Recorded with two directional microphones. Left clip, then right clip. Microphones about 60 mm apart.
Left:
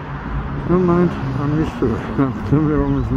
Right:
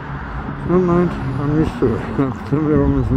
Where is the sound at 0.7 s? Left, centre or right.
Centre.